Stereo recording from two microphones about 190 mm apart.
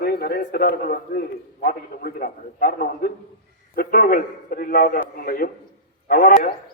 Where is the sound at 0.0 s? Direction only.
55° left (ahead or behind).